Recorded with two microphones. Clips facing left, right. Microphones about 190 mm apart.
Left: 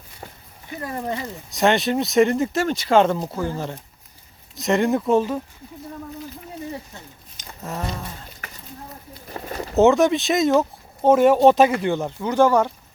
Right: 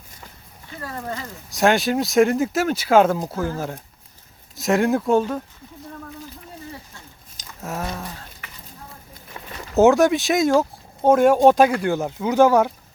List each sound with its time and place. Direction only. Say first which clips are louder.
0.7 s speech: left 3 dB; 20° left (ahead or behind)
1.5 s speech: right 1 dB; centre (ahead or behind)
4.6 s speech: even; centre (ahead or behind)
7.6 s a sound: right 1 dB; 5° right (ahead or behind)
9.3 s a sound: left 7 dB; 35° left (ahead or behind)
9.7 s speech: right 1 dB; centre (ahead or behind)